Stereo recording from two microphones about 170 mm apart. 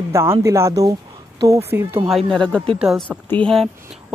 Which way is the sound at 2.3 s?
5° left (ahead or behind).